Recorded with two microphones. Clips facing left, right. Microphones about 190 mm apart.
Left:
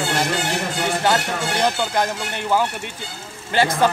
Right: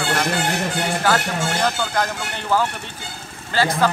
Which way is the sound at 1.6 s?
20° left (ahead or behind).